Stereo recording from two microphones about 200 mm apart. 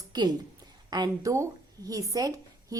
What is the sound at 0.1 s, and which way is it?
A woman's voice, 20° right (ahead or behind).